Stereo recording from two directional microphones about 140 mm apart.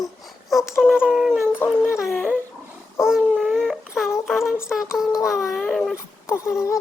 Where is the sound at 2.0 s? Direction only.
Centre (ahead or behind).